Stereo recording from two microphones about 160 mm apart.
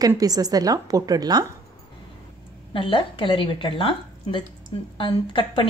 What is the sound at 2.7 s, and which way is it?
A woman's voice, 30° left (ahead or behind).